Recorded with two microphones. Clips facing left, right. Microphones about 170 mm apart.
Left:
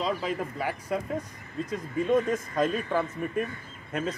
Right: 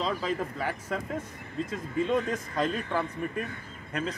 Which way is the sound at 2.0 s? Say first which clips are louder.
Left 7 dB; 20° left (ahead or behind).